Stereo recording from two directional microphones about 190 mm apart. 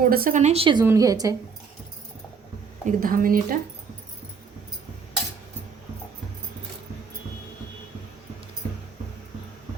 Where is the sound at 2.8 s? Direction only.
45° right (ahead or behind).